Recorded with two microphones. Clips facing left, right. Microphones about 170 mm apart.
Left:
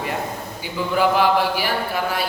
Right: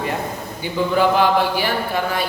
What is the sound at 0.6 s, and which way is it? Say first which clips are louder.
Speech: right 3 dB; 5° left (ahead or behind).